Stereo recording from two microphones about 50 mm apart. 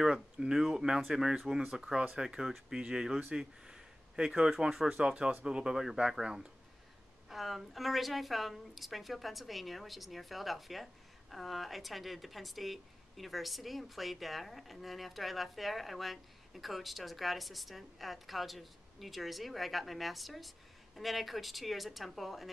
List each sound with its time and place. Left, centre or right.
0.0 s speech: centre
1.8 s a woman's voice: centre